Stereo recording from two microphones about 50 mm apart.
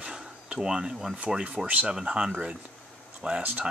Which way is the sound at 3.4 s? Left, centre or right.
Right.